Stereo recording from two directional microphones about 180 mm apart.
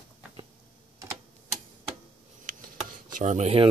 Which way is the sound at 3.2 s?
40° right (ahead or behind).